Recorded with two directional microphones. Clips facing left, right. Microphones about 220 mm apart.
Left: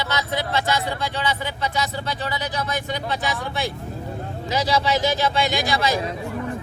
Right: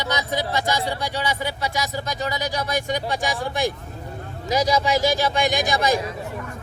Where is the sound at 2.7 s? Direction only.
45° right (ahead or behind).